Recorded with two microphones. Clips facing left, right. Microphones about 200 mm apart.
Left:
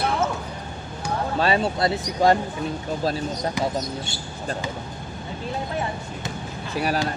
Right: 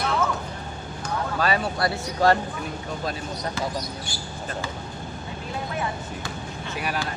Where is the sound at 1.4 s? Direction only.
25° left (ahead or behind).